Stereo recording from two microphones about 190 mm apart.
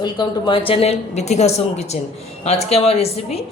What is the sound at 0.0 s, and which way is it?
A woman's voice, 25° left (ahead or behind).